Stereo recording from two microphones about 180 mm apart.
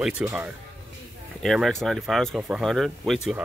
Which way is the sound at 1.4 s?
Centre (ahead or behind).